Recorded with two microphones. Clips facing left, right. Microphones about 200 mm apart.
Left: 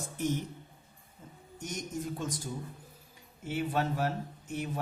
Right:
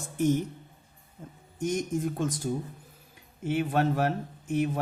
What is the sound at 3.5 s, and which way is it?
Speech, 55° right (ahead or behind).